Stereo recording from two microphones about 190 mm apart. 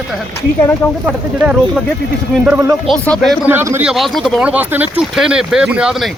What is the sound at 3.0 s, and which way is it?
Speech, 5° left (ahead or behind).